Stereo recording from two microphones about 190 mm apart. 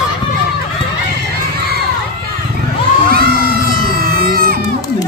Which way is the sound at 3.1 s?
50° right (ahead or behind).